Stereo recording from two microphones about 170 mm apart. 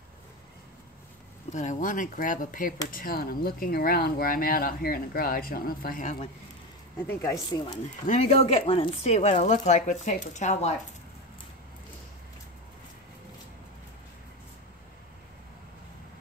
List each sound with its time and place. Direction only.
1.5 s speech: 45° left (ahead or behind)
7.1 s speech: 10° left (ahead or behind)
7.4 s speech: 25° left (ahead or behind)
8.1 s speech: 40° left (ahead or behind)